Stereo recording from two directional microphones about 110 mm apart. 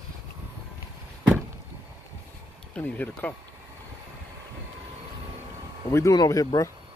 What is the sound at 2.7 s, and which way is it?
Speech, 15° left (ahead or behind).